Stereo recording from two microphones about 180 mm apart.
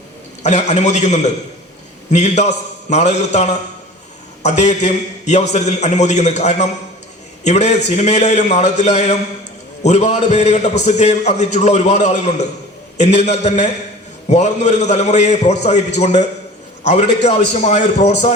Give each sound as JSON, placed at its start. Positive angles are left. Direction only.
{"t": 0.4, "sound": "a man's voice", "side_deg": 40}